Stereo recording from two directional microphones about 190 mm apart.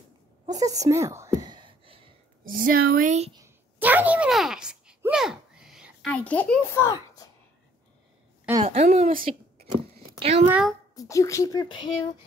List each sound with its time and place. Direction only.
0.5 s a sound: 20° right (ahead or behind)
2.4 s speech: 45° right (ahead or behind)
3.4 s a sound: 10° right (ahead or behind)
6.1 s a child's voice: 10° left (ahead or behind)
8.6 s a woman's voice: 35° right (ahead or behind)
10.5 s a child's voice: 5° right (ahead or behind)
11.0 s speech: 15° left (ahead or behind)